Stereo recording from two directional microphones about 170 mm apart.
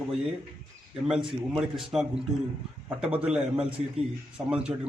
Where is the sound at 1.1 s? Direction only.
5° right (ahead or behind).